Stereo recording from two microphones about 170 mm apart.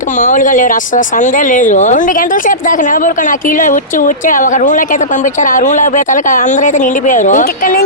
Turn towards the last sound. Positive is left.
turn(degrees=55)  # may be behind; listen again after turning